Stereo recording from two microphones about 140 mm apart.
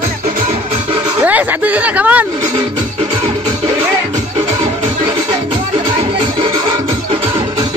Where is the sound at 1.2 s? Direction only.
10° right (ahead or behind).